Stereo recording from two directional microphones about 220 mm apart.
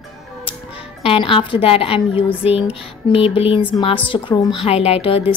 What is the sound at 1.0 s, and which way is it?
A woman's voice, 25° left (ahead or behind).